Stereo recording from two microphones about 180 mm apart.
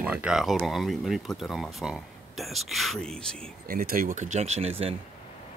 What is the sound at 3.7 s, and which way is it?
Speech, 55° right (ahead or behind).